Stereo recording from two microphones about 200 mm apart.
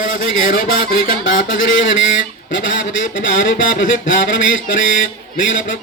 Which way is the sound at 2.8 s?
70° left (ahead or behind).